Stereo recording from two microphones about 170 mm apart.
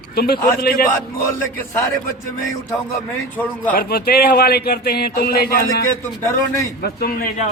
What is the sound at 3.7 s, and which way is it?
Speech, 65° left (ahead or behind).